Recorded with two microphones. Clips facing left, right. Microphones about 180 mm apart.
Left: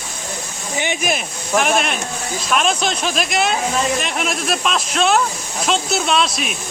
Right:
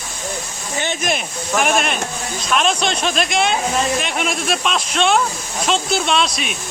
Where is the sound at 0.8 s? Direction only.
15° left (ahead or behind).